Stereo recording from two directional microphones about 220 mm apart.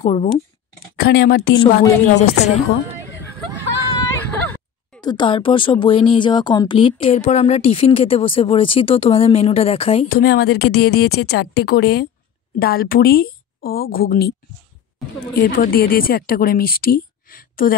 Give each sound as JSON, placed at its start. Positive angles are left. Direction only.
{"t": 0.0, "sound": "speech", "side_deg": 25}
{"t": 0.9, "sound": "a woman's voice", "side_deg": 45}
{"t": 1.7, "sound": "a woman's voice", "side_deg": 30}
{"t": 4.0, "sound": "music", "side_deg": 10}
{"t": 5.0, "sound": "speech", "side_deg": 20}
{"t": 10.0, "sound": "a woman's voice", "side_deg": 45}
{"t": 15.4, "sound": "a woman's voice", "side_deg": 40}